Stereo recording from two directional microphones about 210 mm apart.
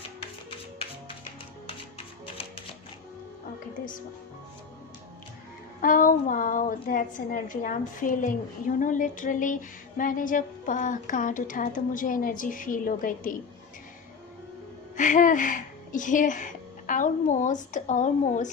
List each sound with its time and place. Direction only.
5.8 s a woman's voice: 40° left (ahead or behind)
14.9 s speech: 40° left (ahead or behind)